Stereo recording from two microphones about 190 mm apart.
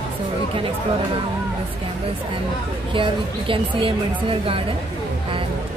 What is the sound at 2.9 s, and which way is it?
A woman's voice, 25° right (ahead or behind).